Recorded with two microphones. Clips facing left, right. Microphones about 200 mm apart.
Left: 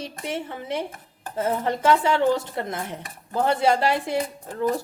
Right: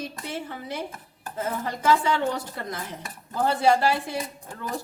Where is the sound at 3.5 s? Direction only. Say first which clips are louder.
Even; 25° left (ahead or behind).